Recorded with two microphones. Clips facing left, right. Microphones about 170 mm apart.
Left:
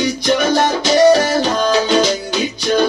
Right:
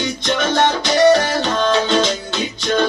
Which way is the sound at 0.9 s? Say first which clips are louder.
Left 3 dB; 20° left (ahead or behind).